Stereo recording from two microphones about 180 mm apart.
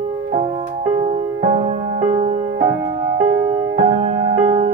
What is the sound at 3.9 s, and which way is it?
Music, 35° right (ahead or behind).